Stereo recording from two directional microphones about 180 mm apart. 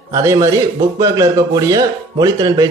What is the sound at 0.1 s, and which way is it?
A man's voice, 15° right (ahead or behind).